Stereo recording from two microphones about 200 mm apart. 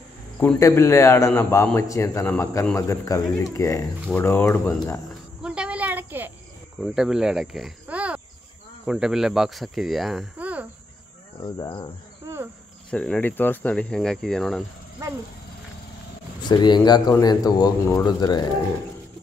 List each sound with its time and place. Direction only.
0.4 s a man's voice: 15° left (ahead or behind)
5.4 s cricket: 5° right (ahead or behind)
6.8 s speech: centre (ahead or behind)
11.4 s speech: 20° left (ahead or behind)
12.9 s speech: 5° left (ahead or behind)
16.4 s speech: 20° left (ahead or behind)